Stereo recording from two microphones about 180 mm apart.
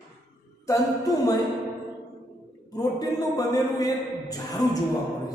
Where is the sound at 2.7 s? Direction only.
20° left (ahead or behind).